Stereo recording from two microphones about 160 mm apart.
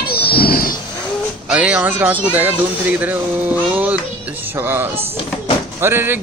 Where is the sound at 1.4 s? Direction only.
5° right (ahead or behind).